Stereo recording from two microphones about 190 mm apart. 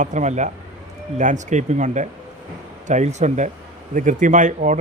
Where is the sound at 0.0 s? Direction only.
40° right (ahead or behind).